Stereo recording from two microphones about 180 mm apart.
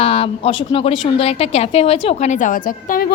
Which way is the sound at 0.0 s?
30° left (ahead or behind).